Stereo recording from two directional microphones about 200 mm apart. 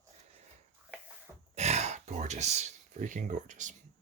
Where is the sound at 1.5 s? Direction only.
35° right (ahead or behind).